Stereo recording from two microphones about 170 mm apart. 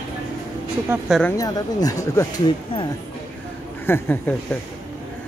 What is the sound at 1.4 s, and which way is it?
Speech, 20° left (ahead or behind).